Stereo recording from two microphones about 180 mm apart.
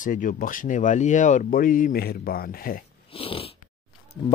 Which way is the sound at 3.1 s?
30° left (ahead or behind).